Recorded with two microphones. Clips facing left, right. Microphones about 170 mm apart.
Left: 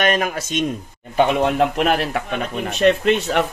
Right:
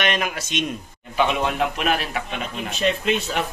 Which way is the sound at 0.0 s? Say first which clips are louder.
Left 5 dB; 40° left (ahead or behind).